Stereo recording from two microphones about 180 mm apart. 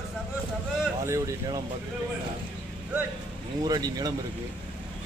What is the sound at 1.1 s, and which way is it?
Vehicle, 20° right (ahead or behind).